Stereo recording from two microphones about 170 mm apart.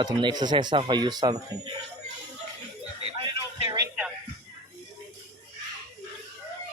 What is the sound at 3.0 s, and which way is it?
Music, 30° right (ahead or behind).